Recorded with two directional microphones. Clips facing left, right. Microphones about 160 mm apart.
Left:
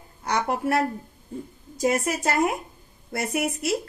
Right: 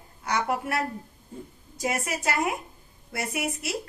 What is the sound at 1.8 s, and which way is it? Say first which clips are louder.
A woman's voice: left 5 dB; 40° left (ahead or behind).